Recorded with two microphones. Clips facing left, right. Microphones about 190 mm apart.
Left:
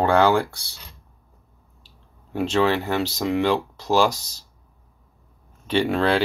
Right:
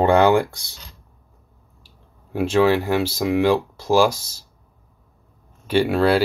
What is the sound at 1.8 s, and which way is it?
Speech, 10° right (ahead or behind).